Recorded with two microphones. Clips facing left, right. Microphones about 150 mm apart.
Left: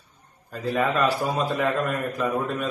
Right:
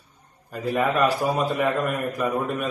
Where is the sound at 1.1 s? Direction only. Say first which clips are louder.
Right 1 dB; 15° right (ahead or behind).